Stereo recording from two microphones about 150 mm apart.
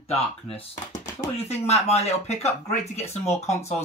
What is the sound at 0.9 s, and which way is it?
Speech, 45° left (ahead or behind).